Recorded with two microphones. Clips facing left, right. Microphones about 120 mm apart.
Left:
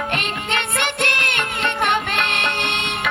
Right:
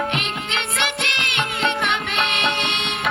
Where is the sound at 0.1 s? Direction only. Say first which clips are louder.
Left 2 dB; 50° left (ahead or behind).